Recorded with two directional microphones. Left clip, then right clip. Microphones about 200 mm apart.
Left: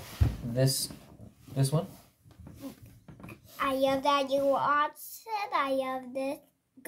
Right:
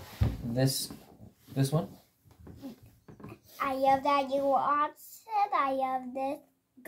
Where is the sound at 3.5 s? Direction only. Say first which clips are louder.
Right 1 dB; 40° left (ahead or behind).